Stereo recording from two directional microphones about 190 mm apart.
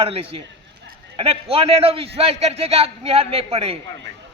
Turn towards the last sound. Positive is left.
turn(degrees=-30)  # may be behind; listen again after turning